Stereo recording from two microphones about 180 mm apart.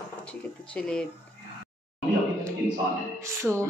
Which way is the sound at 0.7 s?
5° left (ahead or behind).